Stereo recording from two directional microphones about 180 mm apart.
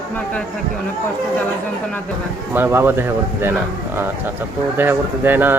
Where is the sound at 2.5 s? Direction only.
10° right (ahead or behind).